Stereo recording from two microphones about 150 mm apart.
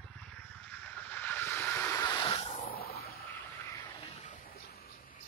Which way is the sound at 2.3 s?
45° left (ahead or behind).